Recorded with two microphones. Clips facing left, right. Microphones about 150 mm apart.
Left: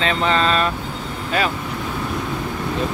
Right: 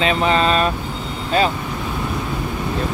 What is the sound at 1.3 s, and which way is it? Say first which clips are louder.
Speech: right 4 dB; 30° right (ahead or behind).